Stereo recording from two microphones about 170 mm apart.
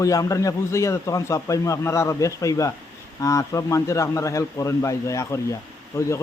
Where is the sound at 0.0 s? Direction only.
20° left (ahead or behind).